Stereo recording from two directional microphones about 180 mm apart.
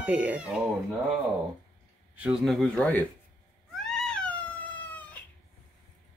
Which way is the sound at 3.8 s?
5° left (ahead or behind).